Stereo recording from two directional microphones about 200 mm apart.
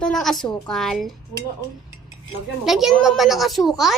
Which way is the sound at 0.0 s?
Centre (ahead or behind).